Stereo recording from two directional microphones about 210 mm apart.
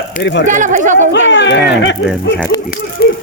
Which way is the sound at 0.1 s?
55° left (ahead or behind).